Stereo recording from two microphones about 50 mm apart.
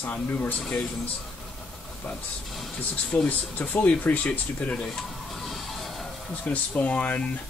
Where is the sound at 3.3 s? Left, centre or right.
Left.